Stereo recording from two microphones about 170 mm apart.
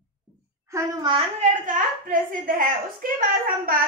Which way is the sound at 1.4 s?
50° right (ahead or behind).